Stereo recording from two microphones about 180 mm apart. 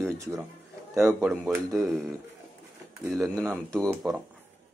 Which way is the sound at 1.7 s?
Centre (ahead or behind).